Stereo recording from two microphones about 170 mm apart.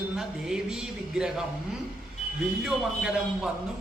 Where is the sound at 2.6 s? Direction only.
5° right (ahead or behind).